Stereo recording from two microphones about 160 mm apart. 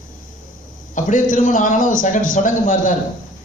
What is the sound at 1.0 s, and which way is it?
A man's voice, 55° left (ahead or behind).